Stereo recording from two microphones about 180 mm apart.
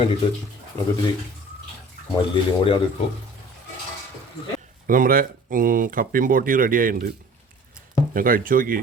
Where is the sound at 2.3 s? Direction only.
30° left (ahead or behind).